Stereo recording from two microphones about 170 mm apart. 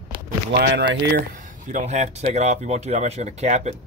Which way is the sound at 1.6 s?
45° right (ahead or behind).